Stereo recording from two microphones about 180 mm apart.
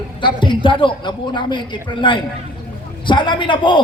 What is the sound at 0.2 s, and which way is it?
A man's voice, 25° left (ahead or behind).